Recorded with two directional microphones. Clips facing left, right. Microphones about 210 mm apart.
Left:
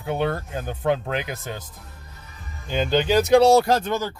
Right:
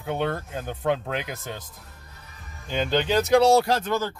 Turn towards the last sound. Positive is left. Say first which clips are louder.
# left 1 dB
turn(degrees=15)  # may be behind; listen again after turning